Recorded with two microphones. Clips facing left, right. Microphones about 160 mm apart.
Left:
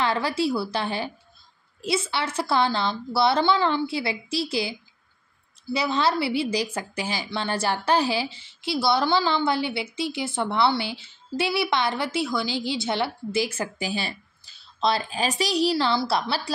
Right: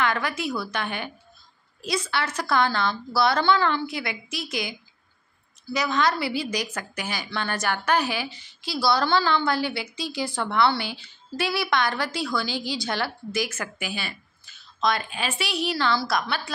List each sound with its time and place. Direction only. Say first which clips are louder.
0.0 s a woman's voice: left 2 dB; 30° left (ahead or behind)